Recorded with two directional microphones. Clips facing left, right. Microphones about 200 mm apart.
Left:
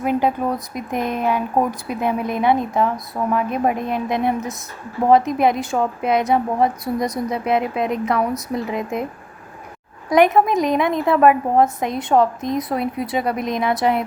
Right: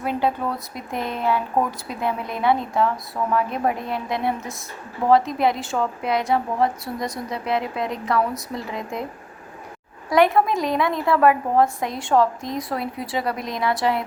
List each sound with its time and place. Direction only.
0.0 s a woman's voice: 15° left (ahead or behind)
10.1 s a woman's voice: 20° left (ahead or behind)